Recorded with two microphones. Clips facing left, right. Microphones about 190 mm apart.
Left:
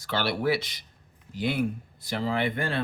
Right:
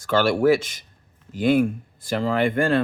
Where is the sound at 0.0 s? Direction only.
45° right (ahead or behind).